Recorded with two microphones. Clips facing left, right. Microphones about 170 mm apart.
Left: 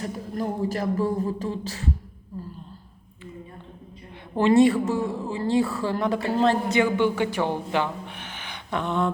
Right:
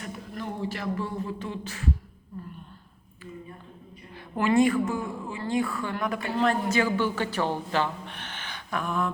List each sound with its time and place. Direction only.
0.0 s beatboxing: 40° left (ahead or behind)
4.4 s a woman's voice: 30° left (ahead or behind)